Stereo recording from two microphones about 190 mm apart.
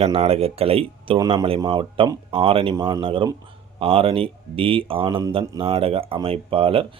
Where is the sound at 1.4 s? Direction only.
30° right (ahead or behind).